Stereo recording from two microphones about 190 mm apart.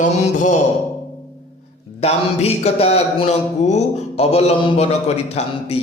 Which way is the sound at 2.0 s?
35° left (ahead or behind).